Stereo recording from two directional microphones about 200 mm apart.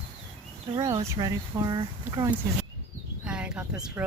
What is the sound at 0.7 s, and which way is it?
Speech, 15° right (ahead or behind).